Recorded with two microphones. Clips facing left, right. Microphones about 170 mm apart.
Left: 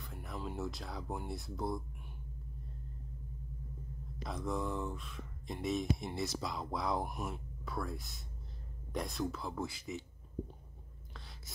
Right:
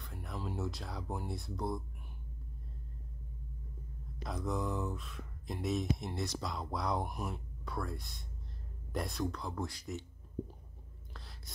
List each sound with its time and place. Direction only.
0.0 s speech: centre (ahead or behind)
4.2 s speech: centre (ahead or behind)